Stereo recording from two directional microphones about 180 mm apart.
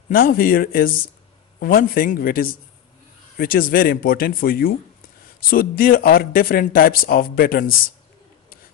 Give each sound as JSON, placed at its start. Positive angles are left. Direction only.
{"t": 0.1, "sound": "speech", "side_deg": 55}